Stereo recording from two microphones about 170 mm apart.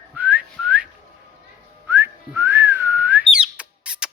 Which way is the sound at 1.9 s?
15° right (ahead or behind).